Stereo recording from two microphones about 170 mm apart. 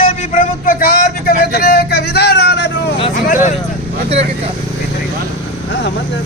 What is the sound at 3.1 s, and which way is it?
Speech, 50° left (ahead or behind).